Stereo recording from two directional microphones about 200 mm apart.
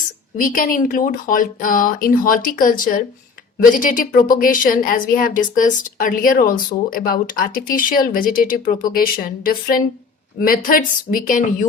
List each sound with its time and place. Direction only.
0.3 s a woman's voice: 45° left (ahead or behind)